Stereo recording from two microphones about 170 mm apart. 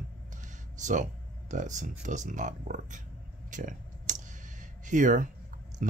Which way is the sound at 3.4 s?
50° right (ahead or behind).